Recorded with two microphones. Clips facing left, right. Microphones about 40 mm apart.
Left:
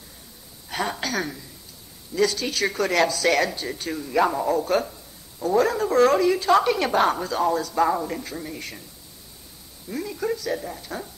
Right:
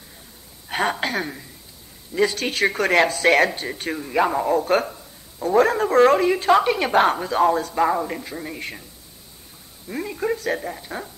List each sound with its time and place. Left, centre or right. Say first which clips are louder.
0.7 s a sound: right 4 dB; right
2.3 s a man's voice: right 3 dB; right
4.6 s speech: right 3 dB; right
6.9 s speech: right 3 dB; right
7.7 s a man's voice: right 1 dB; right
8.5 s speech: right 3 dB; right
9.8 s speech: right 2 dB; right
10.7 s a man's voice: right 2 dB; right